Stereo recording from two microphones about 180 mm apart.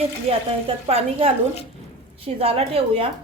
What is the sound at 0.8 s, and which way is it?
A woman's voice, 35° right (ahead or behind).